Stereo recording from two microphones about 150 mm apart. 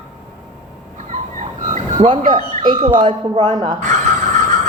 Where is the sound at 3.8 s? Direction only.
55° right (ahead or behind).